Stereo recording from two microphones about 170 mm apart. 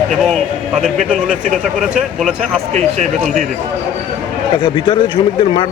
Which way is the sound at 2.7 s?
45° right (ahead or behind).